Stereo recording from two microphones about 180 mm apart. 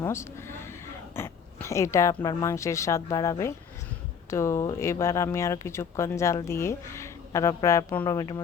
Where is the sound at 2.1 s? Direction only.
20° left (ahead or behind).